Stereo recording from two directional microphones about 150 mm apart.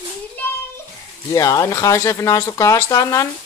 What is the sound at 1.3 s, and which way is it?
Speech, 20° left (ahead or behind).